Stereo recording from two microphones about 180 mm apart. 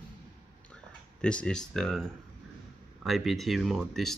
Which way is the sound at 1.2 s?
5° left (ahead or behind).